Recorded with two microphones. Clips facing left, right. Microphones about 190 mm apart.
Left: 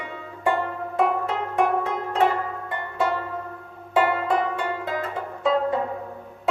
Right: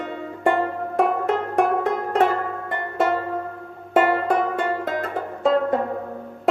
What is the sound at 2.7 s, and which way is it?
Music, 50° right (ahead or behind).